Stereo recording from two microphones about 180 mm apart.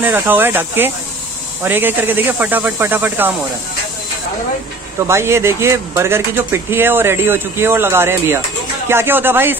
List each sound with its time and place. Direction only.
0.0 s speech: 10° right (ahead or behind)
5.0 s speech: 15° right (ahead or behind)